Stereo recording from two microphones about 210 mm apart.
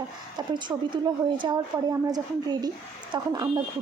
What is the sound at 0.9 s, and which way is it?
A woman's voice, 20° right (ahead or behind).